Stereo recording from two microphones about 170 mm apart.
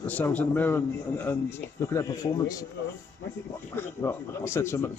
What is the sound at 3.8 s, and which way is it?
Speech, 15° left (ahead or behind).